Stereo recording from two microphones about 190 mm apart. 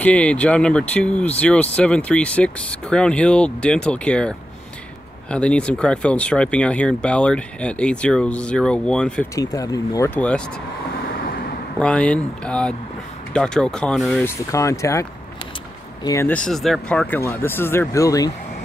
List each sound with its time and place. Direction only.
0.0 s speech: 5° left (ahead or behind)
9.3 s speech: 20° left (ahead or behind)
11.8 s speech: 5° left (ahead or behind)
14.2 s speech: 15° left (ahead or behind)